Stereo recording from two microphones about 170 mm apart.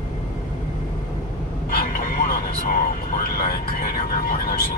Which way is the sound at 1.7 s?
55° left (ahead or behind).